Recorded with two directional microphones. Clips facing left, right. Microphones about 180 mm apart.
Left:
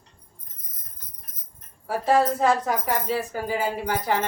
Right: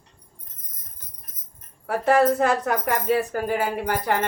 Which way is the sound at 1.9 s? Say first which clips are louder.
Right 2 dB; 65° right (ahead or behind).